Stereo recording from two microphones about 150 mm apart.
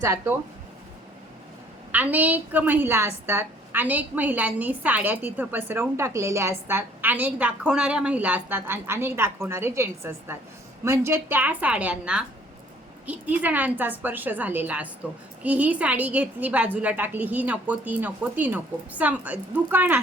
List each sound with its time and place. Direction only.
0.0 s speech: 20° right (ahead or behind)
1.9 s a woman's voice: 10° right (ahead or behind)